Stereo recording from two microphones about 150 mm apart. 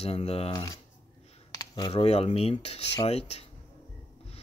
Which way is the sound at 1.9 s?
45° left (ahead or behind).